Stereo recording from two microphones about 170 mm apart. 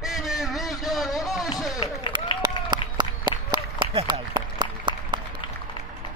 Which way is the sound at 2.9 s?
25° right (ahead or behind).